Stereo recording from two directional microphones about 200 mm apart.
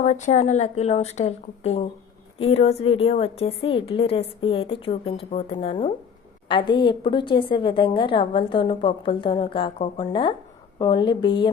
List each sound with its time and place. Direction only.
0.0 s a woman's voice: 35° left (ahead or behind)